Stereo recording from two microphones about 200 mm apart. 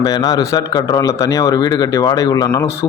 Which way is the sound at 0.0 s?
20° left (ahead or behind).